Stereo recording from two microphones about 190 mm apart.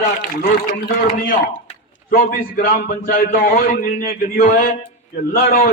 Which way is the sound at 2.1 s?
45° left (ahead or behind).